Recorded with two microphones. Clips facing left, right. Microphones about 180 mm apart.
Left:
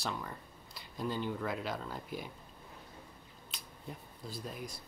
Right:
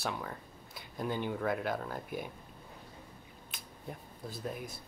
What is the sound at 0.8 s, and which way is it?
Speech, 55° right (ahead or behind).